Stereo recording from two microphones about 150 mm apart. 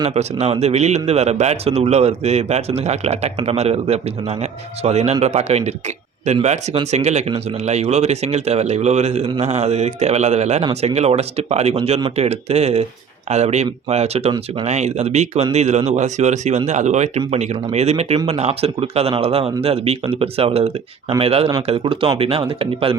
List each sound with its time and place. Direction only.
0.1 s a man's voice: 45° right (ahead or behind)